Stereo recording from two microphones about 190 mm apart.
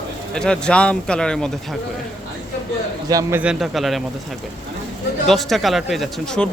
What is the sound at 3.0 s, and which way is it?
Speech, 20° right (ahead or behind).